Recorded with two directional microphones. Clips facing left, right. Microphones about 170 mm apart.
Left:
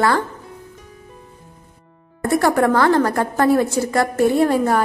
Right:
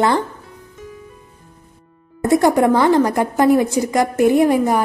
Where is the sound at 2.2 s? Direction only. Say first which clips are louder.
Right 3 dB; 20° right (ahead or behind).